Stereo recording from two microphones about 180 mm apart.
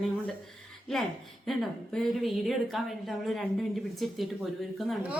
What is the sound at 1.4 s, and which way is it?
A woman's voice, centre (ahead or behind).